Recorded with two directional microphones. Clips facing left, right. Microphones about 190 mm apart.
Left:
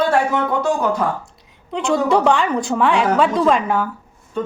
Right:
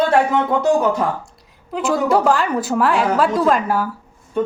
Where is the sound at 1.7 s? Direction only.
5° right (ahead or behind).